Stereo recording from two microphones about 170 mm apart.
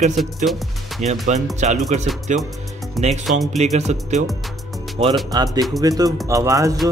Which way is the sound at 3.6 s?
40° right (ahead or behind).